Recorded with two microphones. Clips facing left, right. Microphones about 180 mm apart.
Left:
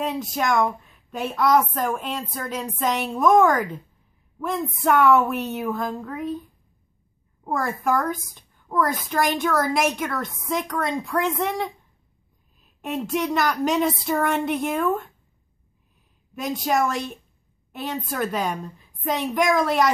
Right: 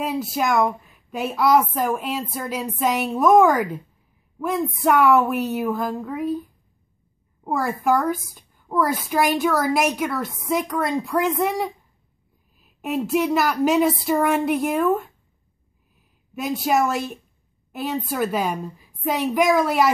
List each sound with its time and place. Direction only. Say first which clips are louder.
0.0 s a woman's voice: right 2 dB; 5° right (ahead or behind)
7.4 s a woman's voice: right 3 dB; centre (ahead or behind)
16.3 s a woman's voice: right 2 dB; 5° right (ahead or behind)